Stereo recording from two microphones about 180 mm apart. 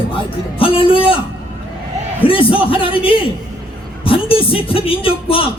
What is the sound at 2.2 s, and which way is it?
Music, 30° left (ahead or behind).